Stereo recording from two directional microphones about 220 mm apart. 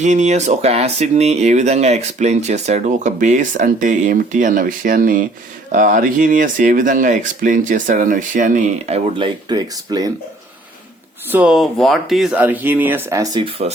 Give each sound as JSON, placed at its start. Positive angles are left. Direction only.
{"t": 0.0, "sound": "speech", "side_deg": -30}
{"t": 11.3, "sound": "speech", "side_deg": -5}